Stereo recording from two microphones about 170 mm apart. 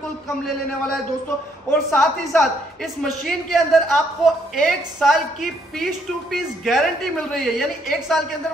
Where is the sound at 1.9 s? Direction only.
Centre (ahead or behind).